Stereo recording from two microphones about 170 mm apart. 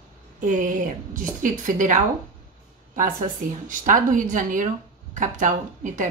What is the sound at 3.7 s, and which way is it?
A woman's voice, 50° right (ahead or behind).